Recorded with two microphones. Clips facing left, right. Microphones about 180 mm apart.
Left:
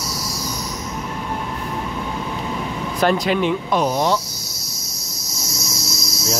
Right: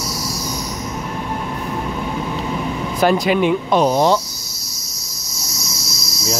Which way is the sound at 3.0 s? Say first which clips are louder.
Right 3 dB; 10° right (ahead or behind).